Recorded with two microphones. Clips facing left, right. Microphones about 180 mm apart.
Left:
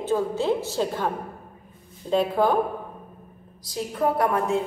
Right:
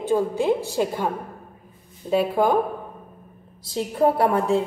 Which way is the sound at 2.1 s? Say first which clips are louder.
Right 1 dB; 10° right (ahead or behind).